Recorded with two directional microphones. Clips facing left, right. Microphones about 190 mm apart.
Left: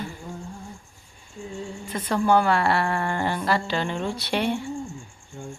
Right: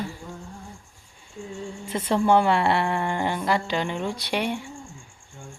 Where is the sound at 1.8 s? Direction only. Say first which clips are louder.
Right 1 dB; 25° right (ahead or behind).